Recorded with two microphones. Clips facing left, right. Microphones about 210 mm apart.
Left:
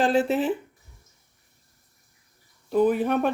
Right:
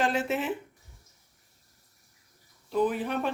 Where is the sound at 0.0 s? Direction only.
35° left (ahead or behind).